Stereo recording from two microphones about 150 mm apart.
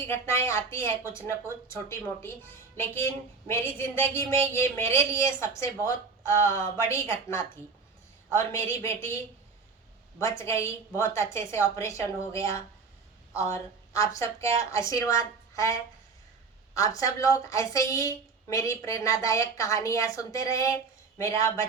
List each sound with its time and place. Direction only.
0.0 s a woman's voice: 15° left (ahead or behind)
10.2 s a woman's voice: 20° left (ahead or behind)